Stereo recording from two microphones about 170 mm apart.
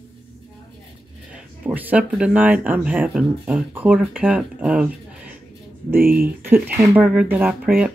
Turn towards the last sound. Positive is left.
turn(degrees=-5)  # may be behind; listen again after turning